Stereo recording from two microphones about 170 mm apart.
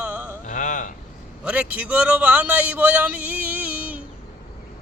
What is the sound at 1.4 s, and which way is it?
A man's voice, 5° right (ahead or behind).